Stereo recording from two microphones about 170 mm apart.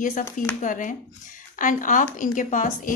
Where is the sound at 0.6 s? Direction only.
50° left (ahead or behind).